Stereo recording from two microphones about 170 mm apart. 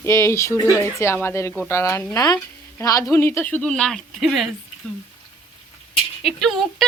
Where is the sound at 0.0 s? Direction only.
15° left (ahead or behind); by 4.4 s centre (ahead or behind).